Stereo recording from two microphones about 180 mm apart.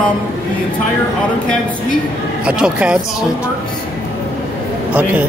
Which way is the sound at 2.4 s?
5° right (ahead or behind).